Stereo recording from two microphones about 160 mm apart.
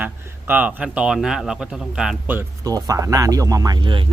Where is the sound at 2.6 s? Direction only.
25° right (ahead or behind).